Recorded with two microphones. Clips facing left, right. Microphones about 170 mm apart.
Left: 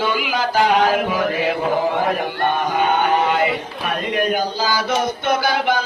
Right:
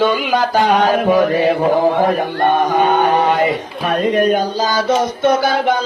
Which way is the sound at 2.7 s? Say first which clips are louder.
Right 4 dB; 35° right (ahead or behind).